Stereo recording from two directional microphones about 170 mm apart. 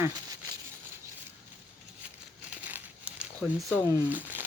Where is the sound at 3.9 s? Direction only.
10° right (ahead or behind).